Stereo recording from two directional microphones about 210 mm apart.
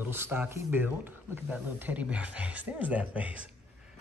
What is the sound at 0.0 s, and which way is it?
Speech, 10° right (ahead or behind).